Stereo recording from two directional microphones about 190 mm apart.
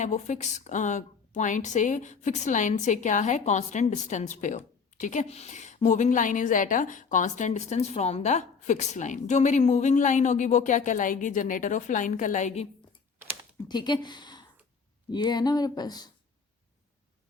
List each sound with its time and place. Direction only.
0.0 s a woman's voice: 40° left (ahead or behind)
13.7 s speech: 25° left (ahead or behind)